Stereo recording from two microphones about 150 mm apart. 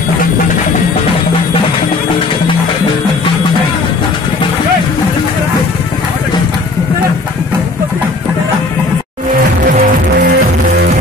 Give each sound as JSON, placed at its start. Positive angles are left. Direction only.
{"t": 9.7, "sound": "music", "side_deg": -70}